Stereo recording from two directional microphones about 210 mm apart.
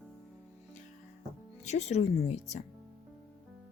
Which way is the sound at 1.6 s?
30° left (ahead or behind).